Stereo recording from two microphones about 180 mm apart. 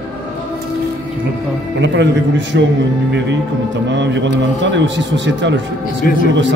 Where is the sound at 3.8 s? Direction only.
80° right.